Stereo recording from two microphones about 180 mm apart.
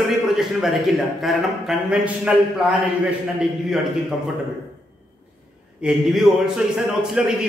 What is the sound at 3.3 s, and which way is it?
Speech, 5° right (ahead or behind).